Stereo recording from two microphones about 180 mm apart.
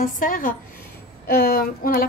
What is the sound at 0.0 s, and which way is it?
Speech, 50° left (ahead or behind).